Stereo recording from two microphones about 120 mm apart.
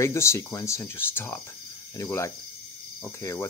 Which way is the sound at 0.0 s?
25° left (ahead or behind).